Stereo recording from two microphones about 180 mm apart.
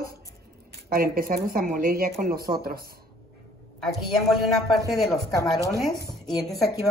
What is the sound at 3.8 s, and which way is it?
Speech, centre (ahead or behind).